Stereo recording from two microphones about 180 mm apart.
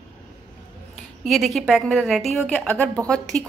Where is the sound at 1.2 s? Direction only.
Centre (ahead or behind).